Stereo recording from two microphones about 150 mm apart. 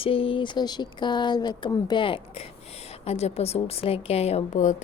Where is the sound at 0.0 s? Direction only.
35° left (ahead or behind).